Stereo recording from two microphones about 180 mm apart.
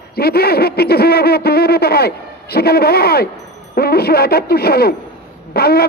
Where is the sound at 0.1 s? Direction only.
60° left (ahead or behind).